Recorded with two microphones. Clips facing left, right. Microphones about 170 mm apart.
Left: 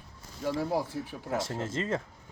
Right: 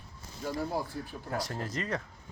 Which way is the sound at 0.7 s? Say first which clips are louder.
Left 4 dB; 80° left.